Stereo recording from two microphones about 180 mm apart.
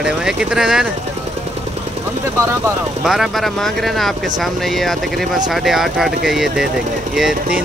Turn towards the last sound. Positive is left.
turn(degrees=-5)  # may be behind; listen again after turning